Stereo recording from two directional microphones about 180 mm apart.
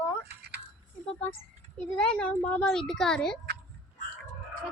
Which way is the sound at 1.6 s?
40° right (ahead or behind).